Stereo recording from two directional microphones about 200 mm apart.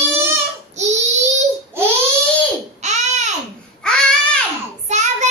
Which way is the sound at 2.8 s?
35° right (ahead or behind).